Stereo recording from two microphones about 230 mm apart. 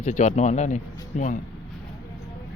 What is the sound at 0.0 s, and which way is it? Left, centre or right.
Speech, left.